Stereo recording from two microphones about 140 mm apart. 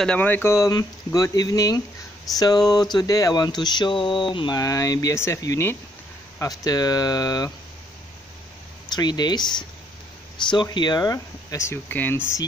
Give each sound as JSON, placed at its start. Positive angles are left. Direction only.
{"t": 0.0, "sound": "speech", "side_deg": 10}
{"t": 8.8, "sound": "speech", "side_deg": 30}